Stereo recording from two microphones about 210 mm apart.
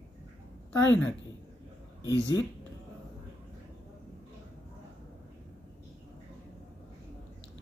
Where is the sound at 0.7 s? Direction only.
5° left (ahead or behind).